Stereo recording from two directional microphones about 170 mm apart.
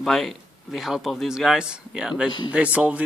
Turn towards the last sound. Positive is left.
turn(degrees=-5)  # may be behind; listen again after turning